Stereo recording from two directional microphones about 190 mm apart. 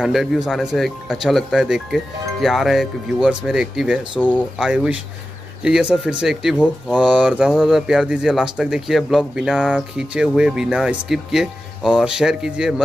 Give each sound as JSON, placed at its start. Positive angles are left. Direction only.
{"t": 0.0, "sound": "speech", "side_deg": 0}